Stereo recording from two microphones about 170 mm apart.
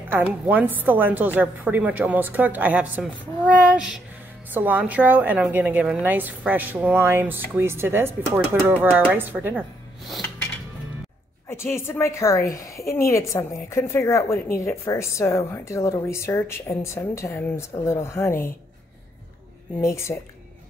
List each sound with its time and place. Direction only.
0.1 s a woman's voice: 10° right (ahead or behind)
11.4 s a woman's voice: 15° left (ahead or behind)
19.8 s a woman's voice: 15° left (ahead or behind)